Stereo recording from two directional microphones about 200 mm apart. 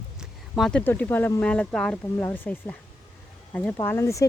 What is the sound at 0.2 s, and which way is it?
Speech, centre (ahead or behind).